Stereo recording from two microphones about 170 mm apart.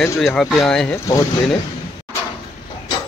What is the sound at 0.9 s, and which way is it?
Speech, 15° left (ahead or behind).